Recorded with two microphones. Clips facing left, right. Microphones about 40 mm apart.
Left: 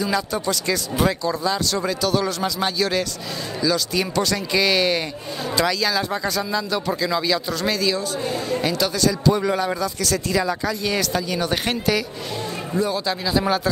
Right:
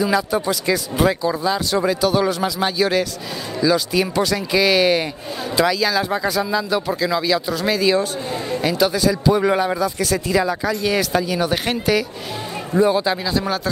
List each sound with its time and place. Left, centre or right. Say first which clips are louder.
0.0 s speech: right 4 dB; centre
7.9 s speech: right 4 dB; right
8.5 s speech: right 5 dB; centre
12.7 s speech: right 7 dB; right
13.2 s speech: left 1 dB; centre